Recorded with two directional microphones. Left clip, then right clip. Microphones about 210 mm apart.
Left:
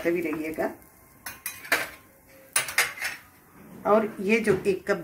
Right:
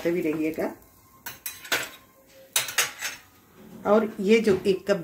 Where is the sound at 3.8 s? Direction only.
35° right (ahead or behind).